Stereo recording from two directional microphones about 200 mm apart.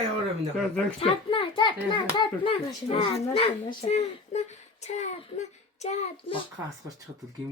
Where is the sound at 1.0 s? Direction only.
25° left (ahead or behind).